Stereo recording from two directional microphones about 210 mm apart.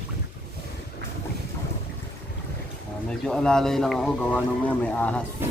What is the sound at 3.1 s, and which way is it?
A man's voice, 5° left (ahead or behind).